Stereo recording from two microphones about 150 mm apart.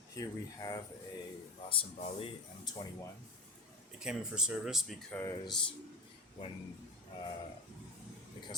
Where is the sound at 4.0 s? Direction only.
5° right (ahead or behind).